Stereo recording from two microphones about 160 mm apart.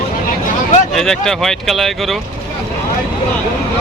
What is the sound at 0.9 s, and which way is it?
Speech, 5° left (ahead or behind).